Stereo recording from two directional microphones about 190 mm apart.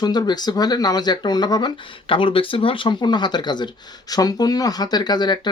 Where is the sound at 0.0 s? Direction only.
20° left (ahead or behind).